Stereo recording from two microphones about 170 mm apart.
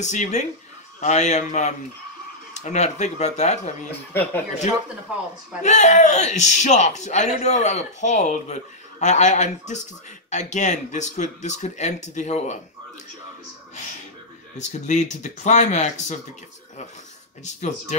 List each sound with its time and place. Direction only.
0.0 s speech: 45° left (ahead or behind)
4.1 s speech: 10° left (ahead or behind)
5.6 s speech: 45° left (ahead or behind)
14.7 s speech: 45° left (ahead or behind)
17.6 s speech: 45° left (ahead or behind)